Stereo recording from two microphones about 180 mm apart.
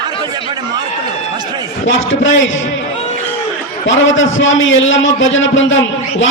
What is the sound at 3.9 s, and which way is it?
A man's voice, 90° left.